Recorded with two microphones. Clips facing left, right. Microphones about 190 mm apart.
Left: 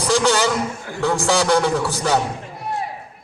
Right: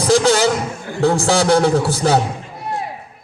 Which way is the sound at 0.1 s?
40° right (ahead or behind).